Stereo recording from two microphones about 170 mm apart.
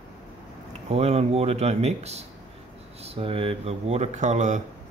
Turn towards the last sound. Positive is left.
turn(degrees=-45)  # may be behind; listen again after turning